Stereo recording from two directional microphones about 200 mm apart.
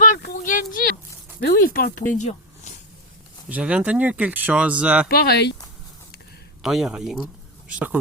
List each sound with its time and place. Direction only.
0.0 s a sound: 50° left (ahead or behind)
1.4 s speech: 50° left (ahead or behind)
3.5 s speech: 5° right (ahead or behind)
5.0 s speech: 50° left (ahead or behind)
6.6 s speech: centre (ahead or behind)